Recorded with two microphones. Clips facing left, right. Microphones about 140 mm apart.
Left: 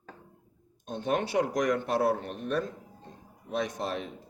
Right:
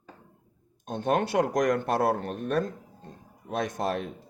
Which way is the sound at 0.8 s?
50° right (ahead or behind).